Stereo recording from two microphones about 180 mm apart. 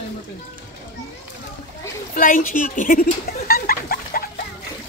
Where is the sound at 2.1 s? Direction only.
50° left (ahead or behind).